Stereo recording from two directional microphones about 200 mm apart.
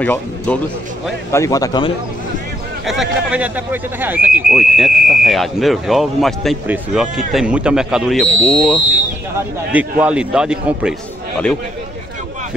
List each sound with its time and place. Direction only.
0.0 s speech: 10° left (ahead or behind)
2.9 s speech: 5° right (ahead or behind)
9.7 s speech: 5° right (ahead or behind)